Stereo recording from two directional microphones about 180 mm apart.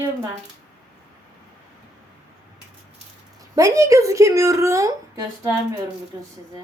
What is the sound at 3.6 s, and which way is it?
Speech, 15° right (ahead or behind).